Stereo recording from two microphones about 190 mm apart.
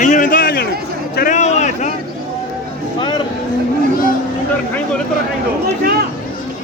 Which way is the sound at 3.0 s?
25° left (ahead or behind).